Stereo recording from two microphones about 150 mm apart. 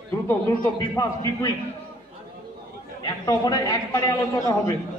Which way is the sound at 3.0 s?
25° left (ahead or behind).